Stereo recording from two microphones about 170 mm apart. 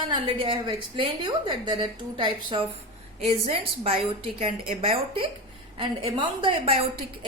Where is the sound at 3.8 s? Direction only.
35° right (ahead or behind).